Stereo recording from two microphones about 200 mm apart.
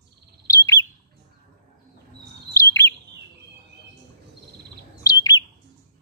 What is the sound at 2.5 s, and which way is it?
Bird, 15° left (ahead or behind).